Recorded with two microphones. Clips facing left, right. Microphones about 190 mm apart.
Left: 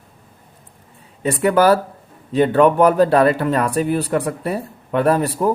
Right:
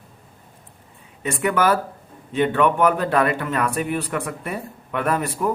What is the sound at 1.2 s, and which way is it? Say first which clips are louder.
A man's voice: left 6 dB; 35° left (ahead or behind).